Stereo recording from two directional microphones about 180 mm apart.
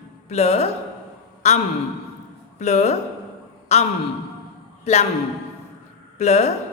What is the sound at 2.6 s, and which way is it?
Speech, 40° left (ahead or behind).